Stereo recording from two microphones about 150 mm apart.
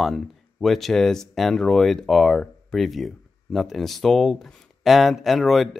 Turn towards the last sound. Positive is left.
turn(degrees=0)  # may be behind; listen again after turning